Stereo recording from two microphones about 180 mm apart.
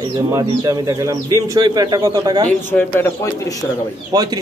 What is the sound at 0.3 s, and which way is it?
Speech, 20° right (ahead or behind).